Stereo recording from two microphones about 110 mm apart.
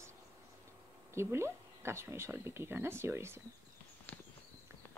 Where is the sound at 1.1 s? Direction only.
25° right (ahead or behind).